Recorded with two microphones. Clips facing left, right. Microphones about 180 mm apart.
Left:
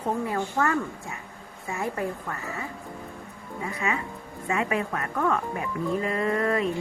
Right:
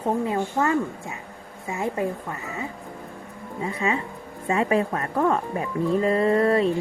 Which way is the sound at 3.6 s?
25° right (ahead or behind).